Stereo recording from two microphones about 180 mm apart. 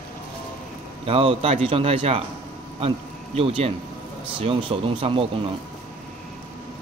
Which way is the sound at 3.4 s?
30° right (ahead or behind).